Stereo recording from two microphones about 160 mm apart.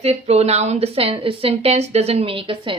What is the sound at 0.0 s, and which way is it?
A woman's voice, 40° right (ahead or behind).